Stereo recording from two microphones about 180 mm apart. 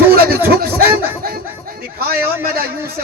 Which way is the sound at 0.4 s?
55° right (ahead or behind).